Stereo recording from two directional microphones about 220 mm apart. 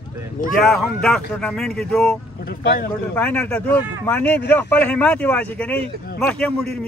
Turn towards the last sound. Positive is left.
turn(degrees=0)  # may be behind; listen again after turning